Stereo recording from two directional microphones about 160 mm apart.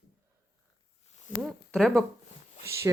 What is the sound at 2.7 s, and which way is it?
Speech, 15° right (ahead or behind).